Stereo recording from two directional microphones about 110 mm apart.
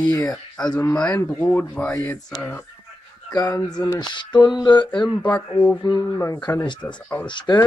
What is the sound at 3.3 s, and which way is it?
Speech, 35° left (ahead or behind).